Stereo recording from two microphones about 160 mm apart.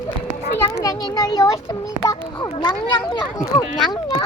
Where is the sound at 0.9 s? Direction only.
25° left (ahead or behind).